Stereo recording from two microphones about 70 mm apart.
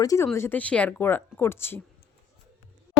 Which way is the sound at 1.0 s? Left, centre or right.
Left.